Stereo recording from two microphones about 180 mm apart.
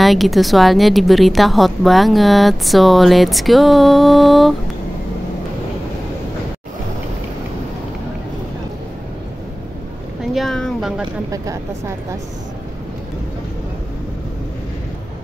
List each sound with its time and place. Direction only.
0.0 s a woman's voice: centre (ahead or behind)
10.2 s a sound: centre (ahead or behind)
11.2 s a woman's voice: 20° right (ahead or behind)